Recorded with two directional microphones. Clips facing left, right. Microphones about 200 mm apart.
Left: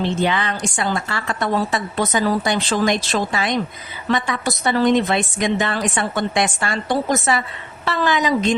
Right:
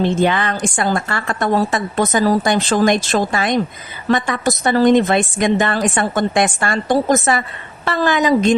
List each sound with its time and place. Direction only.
0.0 s a woman's voice: 50° right (ahead or behind)